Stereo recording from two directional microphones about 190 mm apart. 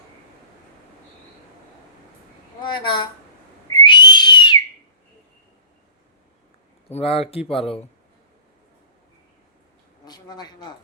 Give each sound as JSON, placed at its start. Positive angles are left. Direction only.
{"t": 2.6, "sound": "a woman's voice", "side_deg": 25}
{"t": 3.7, "sound": "whistle", "side_deg": 25}
{"t": 6.9, "sound": "speech", "side_deg": 30}
{"t": 10.1, "sound": "a sound", "side_deg": 20}